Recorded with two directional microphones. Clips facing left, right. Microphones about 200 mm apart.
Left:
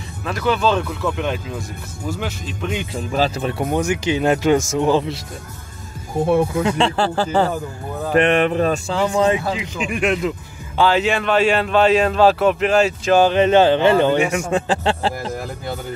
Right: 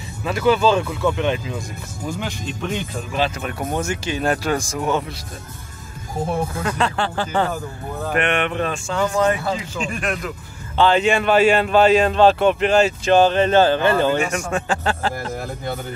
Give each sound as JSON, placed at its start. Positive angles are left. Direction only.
{"t": 0.2, "sound": "speech", "side_deg": -5}
{"t": 3.1, "sound": "speech", "side_deg": 35}
{"t": 3.6, "sound": "speech", "side_deg": 15}
{"t": 6.8, "sound": "speech", "side_deg": 35}
{"t": 9.5, "sound": "speech", "side_deg": 15}
{"t": 10.8, "sound": "speech", "side_deg": 5}
{"t": 13.2, "sound": "speech", "side_deg": 15}
{"t": 14.7, "sound": "speech", "side_deg": 30}